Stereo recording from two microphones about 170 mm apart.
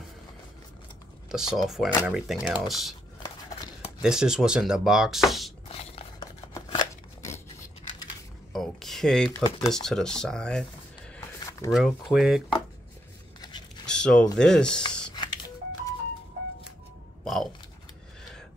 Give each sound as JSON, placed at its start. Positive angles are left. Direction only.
{"t": 1.3, "sound": "speech", "side_deg": 0}
{"t": 4.0, "sound": "speech", "side_deg": -5}
{"t": 5.7, "sound": "a sound", "side_deg": 35}
{"t": 6.5, "sound": "scissors", "side_deg": 20}
{"t": 8.5, "sound": "mechanisms", "side_deg": 0}
{"t": 9.7, "sound": "speech", "side_deg": 5}
{"t": 11.3, "sound": "a sound", "side_deg": 20}
{"t": 11.7, "sound": "speech", "side_deg": -5}
{"t": 13.4, "sound": "dog", "side_deg": 25}
{"t": 13.8, "sound": "a sound", "side_deg": 5}
{"t": 14.4, "sound": "speech", "side_deg": 5}
{"t": 14.8, "sound": "telephone dialing", "side_deg": 25}
{"t": 17.2, "sound": "music", "side_deg": 0}